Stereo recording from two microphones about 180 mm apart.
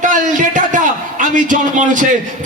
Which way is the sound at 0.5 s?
45° right (ahead or behind).